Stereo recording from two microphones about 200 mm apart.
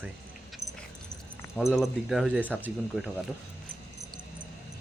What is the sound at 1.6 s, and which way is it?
Speech, centre (ahead or behind).